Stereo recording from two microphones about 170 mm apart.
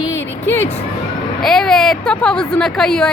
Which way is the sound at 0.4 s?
10° left (ahead or behind).